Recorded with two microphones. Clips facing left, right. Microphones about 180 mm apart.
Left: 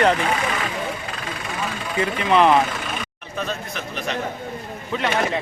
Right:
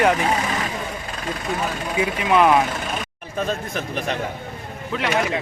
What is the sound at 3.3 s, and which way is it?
Speech, 45° right (ahead or behind).